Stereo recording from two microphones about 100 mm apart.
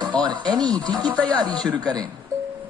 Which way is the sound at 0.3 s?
45° right (ahead or behind).